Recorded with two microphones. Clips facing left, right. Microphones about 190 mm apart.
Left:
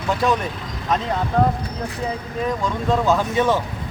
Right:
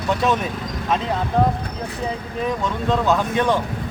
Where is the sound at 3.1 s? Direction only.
5° left (ahead or behind).